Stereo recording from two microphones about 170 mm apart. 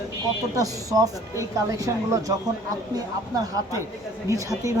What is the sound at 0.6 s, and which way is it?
Speech, 20° right (ahead or behind).